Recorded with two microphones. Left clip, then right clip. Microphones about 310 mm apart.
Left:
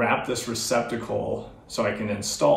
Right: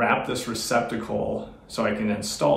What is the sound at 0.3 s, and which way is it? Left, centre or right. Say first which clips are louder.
Speech: even; centre.